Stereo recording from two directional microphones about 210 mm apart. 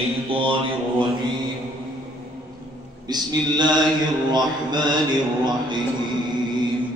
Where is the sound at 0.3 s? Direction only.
25° right (ahead or behind).